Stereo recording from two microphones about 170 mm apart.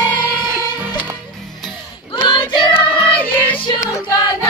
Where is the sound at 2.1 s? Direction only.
30° left (ahead or behind).